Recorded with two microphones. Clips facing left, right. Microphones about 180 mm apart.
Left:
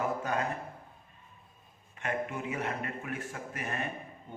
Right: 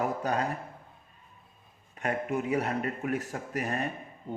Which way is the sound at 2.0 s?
35° right (ahead or behind).